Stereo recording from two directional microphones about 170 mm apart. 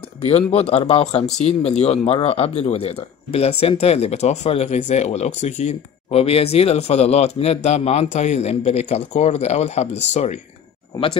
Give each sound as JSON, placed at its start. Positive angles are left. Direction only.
{"t": 0.2, "sound": "speech", "side_deg": 40}